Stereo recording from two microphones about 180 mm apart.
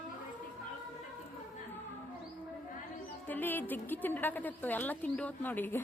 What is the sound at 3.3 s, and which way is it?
Speech, 10° left (ahead or behind).